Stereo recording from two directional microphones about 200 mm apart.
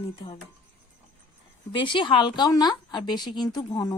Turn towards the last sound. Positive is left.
turn(degrees=20)  # may be behind; listen again after turning